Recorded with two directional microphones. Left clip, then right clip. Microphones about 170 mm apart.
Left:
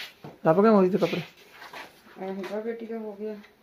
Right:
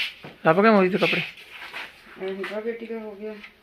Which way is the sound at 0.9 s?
10° right (ahead or behind).